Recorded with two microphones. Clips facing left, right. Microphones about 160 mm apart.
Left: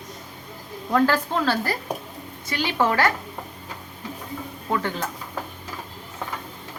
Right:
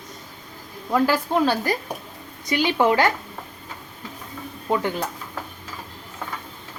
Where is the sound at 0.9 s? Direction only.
10° right (ahead or behind).